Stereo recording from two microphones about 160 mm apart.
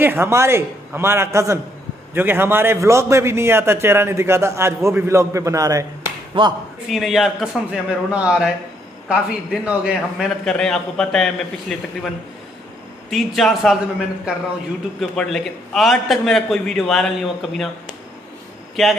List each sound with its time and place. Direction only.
0.0 s a man's voice: 15° right (ahead or behind)
6.4 s speech: 35° right (ahead or behind)
6.9 s a man's voice: centre (ahead or behind)
13.1 s a man's voice: centre (ahead or behind)
15.0 s a man's voice: centre (ahead or behind)